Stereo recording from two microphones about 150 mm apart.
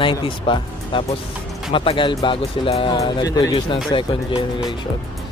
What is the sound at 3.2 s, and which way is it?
Speech, 25° left (ahead or behind).